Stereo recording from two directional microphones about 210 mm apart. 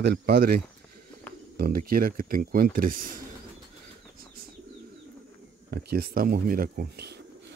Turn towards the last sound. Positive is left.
turn(degrees=-45)  # may be behind; listen again after turning